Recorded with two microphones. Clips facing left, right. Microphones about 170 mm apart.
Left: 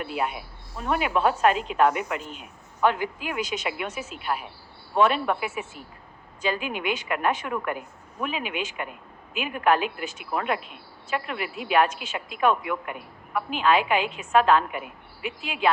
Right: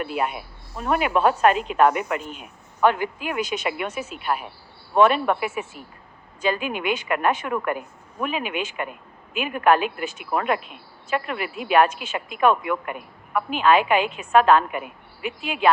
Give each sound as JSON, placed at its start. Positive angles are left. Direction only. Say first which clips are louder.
{"t": 0.0, "sound": "speech", "louder": "right 3 dB", "side_deg": -60}